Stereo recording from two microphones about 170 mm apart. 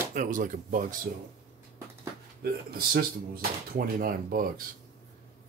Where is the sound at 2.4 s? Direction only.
65° right (ahead or behind).